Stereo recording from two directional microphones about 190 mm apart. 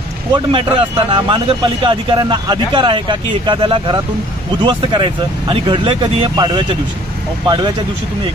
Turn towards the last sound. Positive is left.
turn(degrees=-25)  # may be behind; listen again after turning